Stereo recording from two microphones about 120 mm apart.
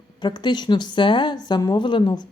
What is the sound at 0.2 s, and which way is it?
A woman's voice, 40° left (ahead or behind).